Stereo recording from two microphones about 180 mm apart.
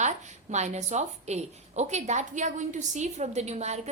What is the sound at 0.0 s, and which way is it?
A woman's voice, 40° right (ahead or behind).